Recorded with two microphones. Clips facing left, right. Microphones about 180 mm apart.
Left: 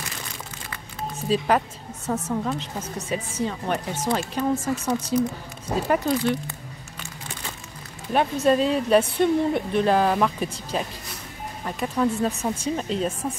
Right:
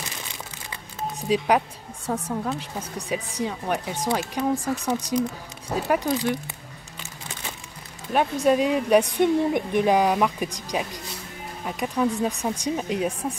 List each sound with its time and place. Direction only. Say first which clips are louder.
0.7 s telephone dialing: right 2 dB; 15° right (ahead or behind)
2.0 s a woman's voice: left 1 dB; 15° right (ahead or behind)
8.1 s a woman's voice: even; 10° right (ahead or behind)